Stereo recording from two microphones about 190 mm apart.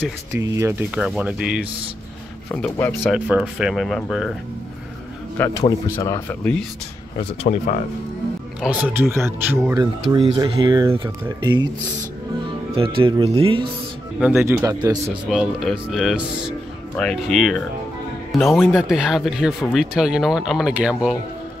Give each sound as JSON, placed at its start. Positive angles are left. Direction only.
{"t": 0.3, "sound": "speech", "side_deg": -15}
{"t": 2.5, "sound": "speech", "side_deg": 10}
{"t": 3.1, "sound": "speech", "side_deg": -5}
{"t": 5.4, "sound": "speech", "side_deg": 10}
{"t": 7.4, "sound": "speech", "side_deg": 40}
{"t": 8.5, "sound": "speech", "side_deg": -5}
{"t": 10.0, "sound": "speech", "side_deg": -25}
{"t": 14.2, "sound": "speech", "side_deg": -10}
{"t": 15.2, "sound": "a man's voice", "side_deg": 0}